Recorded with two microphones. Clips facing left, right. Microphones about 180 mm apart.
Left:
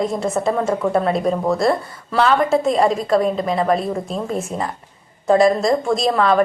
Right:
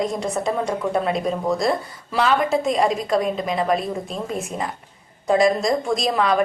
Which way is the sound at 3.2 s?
30° left (ahead or behind).